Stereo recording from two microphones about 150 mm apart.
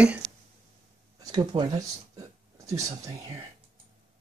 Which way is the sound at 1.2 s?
25° right (ahead or behind).